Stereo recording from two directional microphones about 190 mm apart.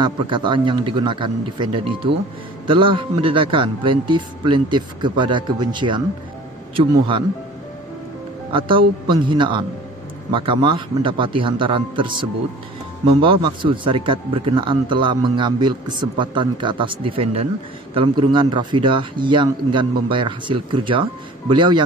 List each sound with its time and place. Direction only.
0.0 s speech: 25° right (ahead or behind)
8.5 s speech: 25° right (ahead or behind)